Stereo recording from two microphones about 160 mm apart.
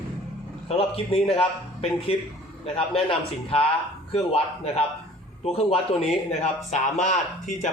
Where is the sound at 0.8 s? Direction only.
40° left (ahead or behind).